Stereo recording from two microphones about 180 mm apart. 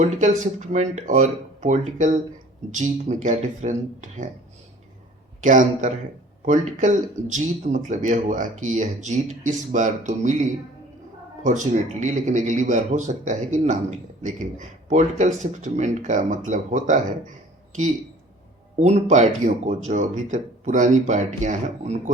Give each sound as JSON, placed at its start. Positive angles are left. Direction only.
{"t": 0.0, "sound": "speech", "side_deg": -40}
{"t": 5.4, "sound": "a man's voice", "side_deg": -45}
{"t": 18.8, "sound": "speech", "side_deg": -40}